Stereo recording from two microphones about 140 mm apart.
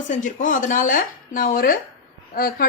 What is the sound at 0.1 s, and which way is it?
A woman's voice, 65° left (ahead or behind).